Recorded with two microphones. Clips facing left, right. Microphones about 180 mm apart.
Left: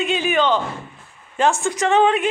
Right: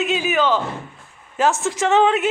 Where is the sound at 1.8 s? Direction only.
15° left (ahead or behind).